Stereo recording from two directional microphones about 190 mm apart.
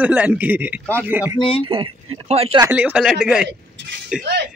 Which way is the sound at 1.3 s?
25° left (ahead or behind).